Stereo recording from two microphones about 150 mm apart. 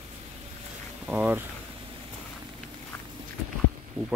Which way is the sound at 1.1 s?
10° right (ahead or behind).